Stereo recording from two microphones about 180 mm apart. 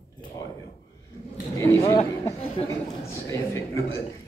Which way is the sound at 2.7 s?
20° left (ahead or behind).